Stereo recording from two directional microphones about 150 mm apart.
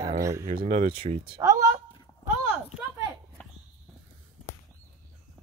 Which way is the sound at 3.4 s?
10° left (ahead or behind).